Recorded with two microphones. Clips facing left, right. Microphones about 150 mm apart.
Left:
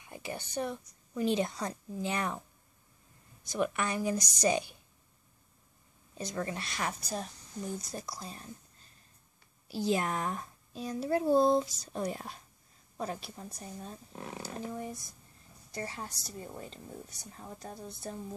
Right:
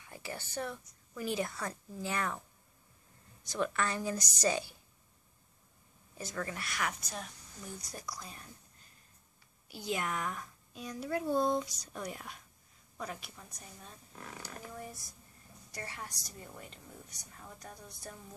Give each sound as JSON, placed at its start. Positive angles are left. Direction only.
{"t": 0.0, "sound": "a woman's voice", "side_deg": 20}
{"t": 3.4, "sound": "a woman's voice", "side_deg": 15}
{"t": 6.1, "sound": "a woman's voice", "side_deg": 25}
{"t": 9.7, "sound": "a woman's voice", "side_deg": 30}